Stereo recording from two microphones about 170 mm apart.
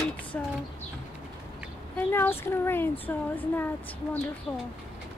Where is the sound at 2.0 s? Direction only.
15° left (ahead or behind).